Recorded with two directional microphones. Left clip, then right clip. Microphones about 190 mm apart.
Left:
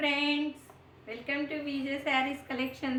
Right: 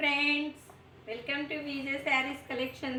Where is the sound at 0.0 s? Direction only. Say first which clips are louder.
Right 1 dB; 25° left (ahead or behind).